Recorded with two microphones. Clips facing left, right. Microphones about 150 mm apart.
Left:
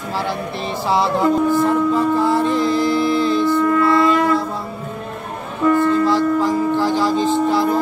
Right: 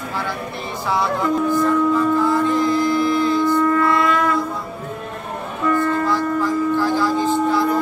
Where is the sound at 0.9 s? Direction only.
25° left (ahead or behind).